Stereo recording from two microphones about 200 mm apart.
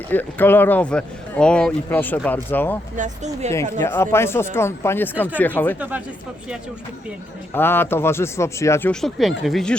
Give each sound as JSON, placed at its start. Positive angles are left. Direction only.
{"t": 0.1, "sound": "speech", "side_deg": 10}
{"t": 2.9, "sound": "speech", "side_deg": -35}
{"t": 3.5, "sound": "speech", "side_deg": 15}
{"t": 7.5, "sound": "speech", "side_deg": 10}